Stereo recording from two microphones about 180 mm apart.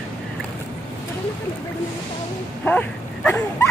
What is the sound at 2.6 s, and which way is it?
Speech, 10° left (ahead or behind).